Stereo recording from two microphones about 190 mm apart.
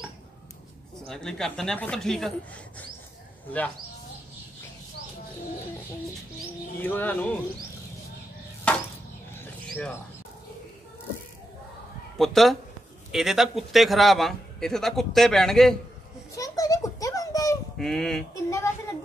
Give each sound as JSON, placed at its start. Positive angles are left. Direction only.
{"t": 1.0, "sound": "a man's voice", "side_deg": 5}
{"t": 6.8, "sound": "speech", "side_deg": 10}
{"t": 8.7, "sound": "chop", "side_deg": 5}
{"t": 12.2, "sound": "a man's voice", "side_deg": 0}
{"t": 16.3, "sound": "a sound", "side_deg": 15}
{"t": 17.7, "sound": "a man's voice", "side_deg": 5}
{"t": 18.3, "sound": "a sound", "side_deg": 15}